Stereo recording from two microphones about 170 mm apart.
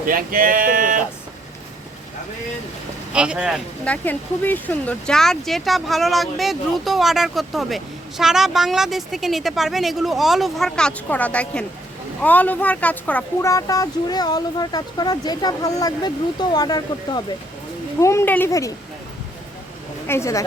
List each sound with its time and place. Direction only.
0.1 s speech: 55° right (ahead or behind)
3.1 s speech: 5° right (ahead or behind)
3.8 s speech: 10° left (ahead or behind)
20.1 s speech: 15° left (ahead or behind)